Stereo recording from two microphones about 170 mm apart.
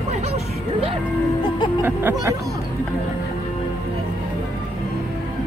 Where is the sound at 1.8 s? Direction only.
10° right (ahead or behind).